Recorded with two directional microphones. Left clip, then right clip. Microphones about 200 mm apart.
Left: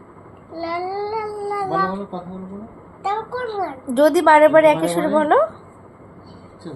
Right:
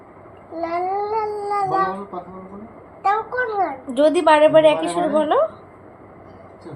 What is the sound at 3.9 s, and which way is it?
A woman's voice, 25° left (ahead or behind).